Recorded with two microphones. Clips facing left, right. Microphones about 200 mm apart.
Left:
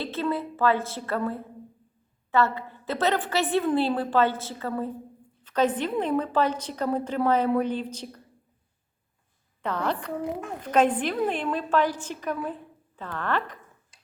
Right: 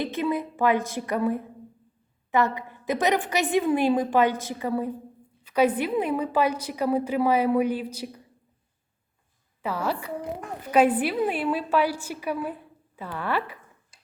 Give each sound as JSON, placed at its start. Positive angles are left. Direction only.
{"t": 0.0, "sound": "a woman's voice", "side_deg": -15}
{"t": 9.6, "sound": "a woman's voice", "side_deg": -5}